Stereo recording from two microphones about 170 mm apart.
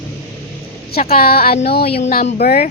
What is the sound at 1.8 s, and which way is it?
Speech, 35° left (ahead or behind).